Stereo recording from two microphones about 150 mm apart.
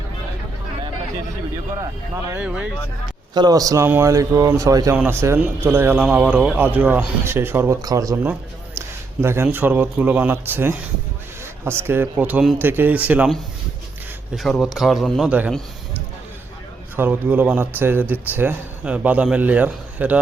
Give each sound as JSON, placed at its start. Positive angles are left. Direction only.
{"t": 2.3, "sound": "speech", "side_deg": -10}
{"t": 3.3, "sound": "speech", "side_deg": -25}
{"t": 14.3, "sound": "speech", "side_deg": 0}
{"t": 17.0, "sound": "speech", "side_deg": -10}